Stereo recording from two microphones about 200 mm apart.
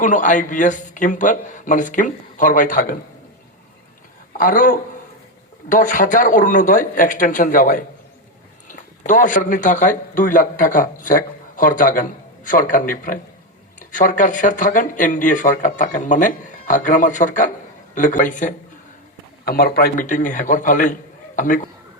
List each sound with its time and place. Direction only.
0.0 s a man's voice: 40° left (ahead or behind)
4.4 s a man's voice: 45° left (ahead or behind)